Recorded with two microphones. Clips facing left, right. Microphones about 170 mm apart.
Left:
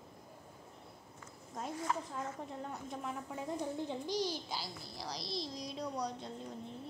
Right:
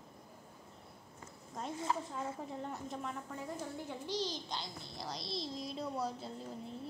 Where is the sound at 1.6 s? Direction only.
Centre (ahead or behind).